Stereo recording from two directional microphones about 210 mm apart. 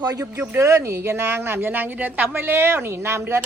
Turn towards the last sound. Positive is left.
turn(degrees=-10)  # may be behind; listen again after turning